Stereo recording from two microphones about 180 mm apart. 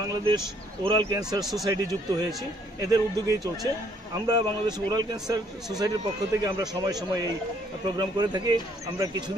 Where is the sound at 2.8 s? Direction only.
20° right (ahead or behind).